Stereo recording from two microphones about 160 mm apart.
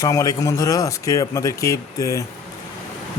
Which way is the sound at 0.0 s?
20° left (ahead or behind).